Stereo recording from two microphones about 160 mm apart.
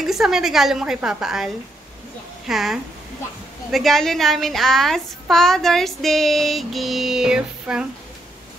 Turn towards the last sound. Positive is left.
turn(degrees=-5)  # may be behind; listen again after turning